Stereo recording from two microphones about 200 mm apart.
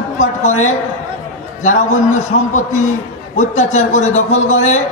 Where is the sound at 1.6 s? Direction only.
40° left (ahead or behind).